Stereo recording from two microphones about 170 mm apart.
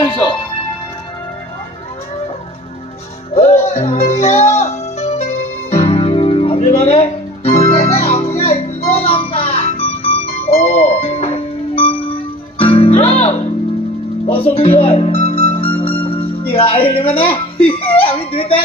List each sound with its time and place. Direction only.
0.0 s music: 30° left (ahead or behind)
3.3 s music: 40° left (ahead or behind)
14.5 s music: 35° left (ahead or behind)
17.9 s a sound: 35° left (ahead or behind)